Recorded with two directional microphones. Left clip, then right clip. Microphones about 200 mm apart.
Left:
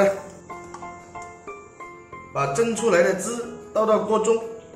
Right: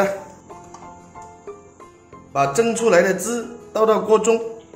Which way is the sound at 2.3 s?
50° right (ahead or behind).